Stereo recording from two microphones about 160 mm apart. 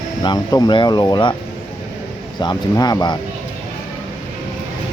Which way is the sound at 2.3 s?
25° left (ahead or behind).